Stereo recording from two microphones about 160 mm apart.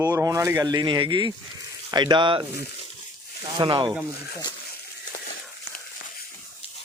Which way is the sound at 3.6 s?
30° right (ahead or behind).